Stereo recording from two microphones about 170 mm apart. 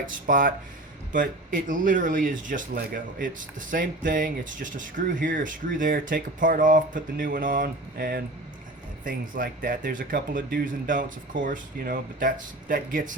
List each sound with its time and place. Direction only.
0.0 s speech: 55° right (ahead or behind)